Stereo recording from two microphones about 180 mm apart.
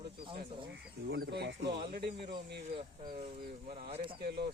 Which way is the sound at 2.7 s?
30° right (ahead or behind).